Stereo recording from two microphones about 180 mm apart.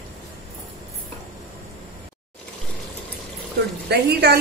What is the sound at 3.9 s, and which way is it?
Speech, 65° right (ahead or behind).